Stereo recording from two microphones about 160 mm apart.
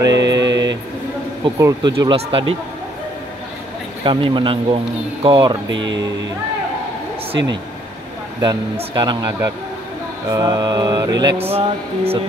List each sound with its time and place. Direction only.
0.0 s a sound: 25° right (ahead or behind)
1.4 s mantra: 25° right (ahead or behind)
2.1 s speech: 35° right (ahead or behind)
4.0 s speech: 30° right (ahead or behind)
5.2 s mantra: 30° right (ahead or behind)
8.7 s mantra: 25° right (ahead or behind)
11.5 s speech: 40° right (ahead or behind)